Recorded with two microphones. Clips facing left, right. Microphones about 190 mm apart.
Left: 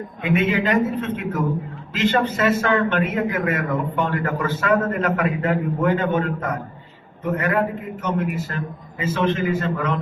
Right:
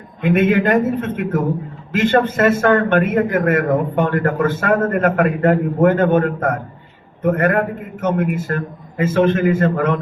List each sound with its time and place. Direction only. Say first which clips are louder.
0.2 s a man's voice: right 6 dB; 50° right (ahead or behind)